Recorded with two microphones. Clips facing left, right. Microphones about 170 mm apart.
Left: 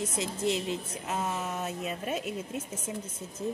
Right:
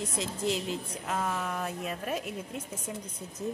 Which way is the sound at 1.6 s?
Centre (ahead or behind).